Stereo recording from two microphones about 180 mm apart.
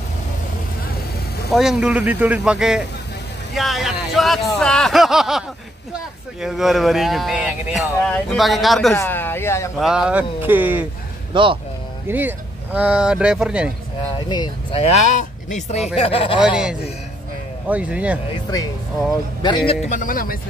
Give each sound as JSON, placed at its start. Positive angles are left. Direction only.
{"t": 1.5, "sound": "speech", "side_deg": 0}
{"t": 6.4, "sound": "speech", "side_deg": 0}
{"t": 8.9, "sound": "speech", "side_deg": 10}
{"t": 9.8, "sound": "speech", "side_deg": -5}
{"t": 11.3, "sound": "speech", "side_deg": -30}
{"t": 12.1, "sound": "speech", "side_deg": -10}
{"t": 14.1, "sound": "speech", "side_deg": 25}
{"t": 14.8, "sound": "speech", "side_deg": 40}
{"t": 16.3, "sound": "speech", "side_deg": -5}
{"t": 18.3, "sound": "a man's voice", "side_deg": 20}
{"t": 19.9, "sound": "speech", "side_deg": 50}